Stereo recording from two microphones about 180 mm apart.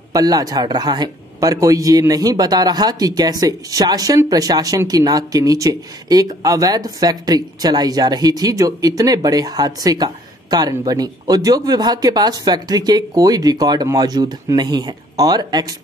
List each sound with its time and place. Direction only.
0.1 s speech: 20° right (ahead or behind)